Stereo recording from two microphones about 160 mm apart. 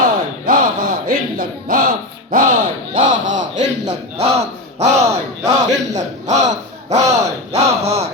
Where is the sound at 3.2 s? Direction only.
50° right (ahead or behind).